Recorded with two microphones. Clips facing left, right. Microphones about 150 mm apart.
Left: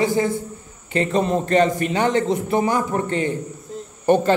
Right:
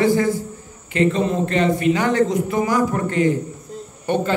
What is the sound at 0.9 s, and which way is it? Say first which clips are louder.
Speech: right 1 dB; 40° left (ahead or behind).